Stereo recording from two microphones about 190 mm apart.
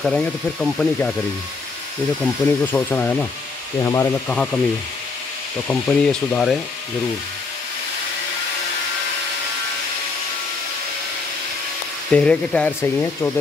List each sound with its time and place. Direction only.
0.0 s speech: 5° left (ahead or behind)
2.2 s speech: 10° left (ahead or behind)
5.7 s speech: 5° left (ahead or behind)
12.1 s speech: 5° left (ahead or behind)